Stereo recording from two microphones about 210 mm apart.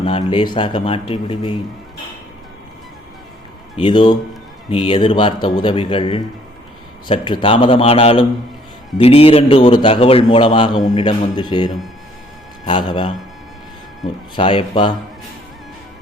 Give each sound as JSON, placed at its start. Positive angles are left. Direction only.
{"t": 0.0, "sound": "a man's voice", "side_deg": 25}
{"t": 3.8, "sound": "a man's voice", "side_deg": 25}
{"t": 14.3, "sound": "a man's voice", "side_deg": 25}